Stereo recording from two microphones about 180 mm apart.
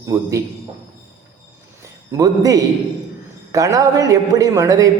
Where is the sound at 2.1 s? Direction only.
20° right (ahead or behind).